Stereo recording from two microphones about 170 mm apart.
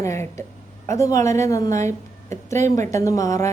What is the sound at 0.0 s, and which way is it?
A woman's voice, 15° left (ahead or behind).